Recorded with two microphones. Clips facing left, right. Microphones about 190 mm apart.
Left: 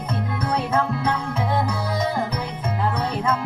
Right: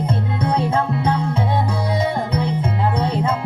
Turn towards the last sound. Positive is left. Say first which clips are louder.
# right 3 dB
turn(degrees=-25)  # may be behind; listen again after turning